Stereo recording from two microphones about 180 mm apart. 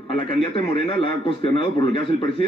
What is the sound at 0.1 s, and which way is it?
A man's voice, 25° left (ahead or behind).